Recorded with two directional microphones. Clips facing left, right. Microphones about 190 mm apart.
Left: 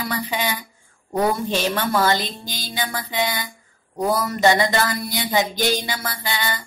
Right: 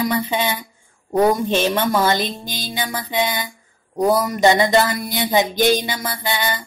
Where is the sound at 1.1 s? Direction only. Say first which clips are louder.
Right 5 dB; 20° right (ahead or behind).